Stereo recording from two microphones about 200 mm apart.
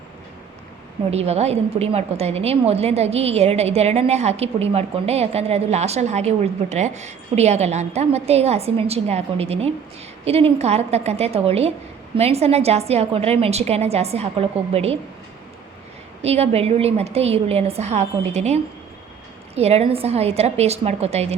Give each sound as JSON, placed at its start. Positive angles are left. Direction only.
{"t": 1.1, "sound": "a woman's voice", "side_deg": -30}
{"t": 16.2, "sound": "a woman's voice", "side_deg": -30}